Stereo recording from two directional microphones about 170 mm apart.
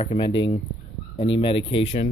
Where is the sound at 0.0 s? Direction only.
35° left (ahead or behind).